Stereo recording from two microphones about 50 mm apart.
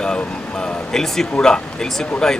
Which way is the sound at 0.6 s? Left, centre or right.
Centre.